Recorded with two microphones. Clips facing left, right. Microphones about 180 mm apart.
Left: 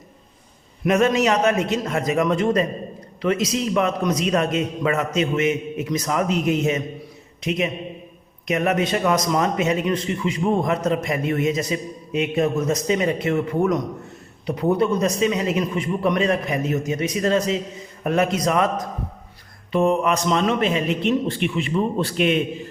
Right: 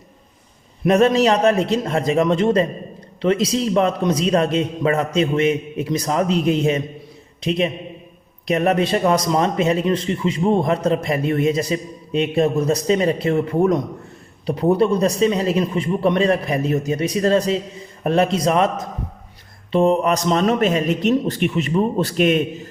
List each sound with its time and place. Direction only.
0.9 s a man's voice: 35° right (ahead or behind)